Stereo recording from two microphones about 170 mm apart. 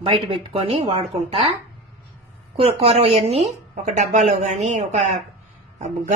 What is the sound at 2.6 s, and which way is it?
A woman's voice, 35° right (ahead or behind).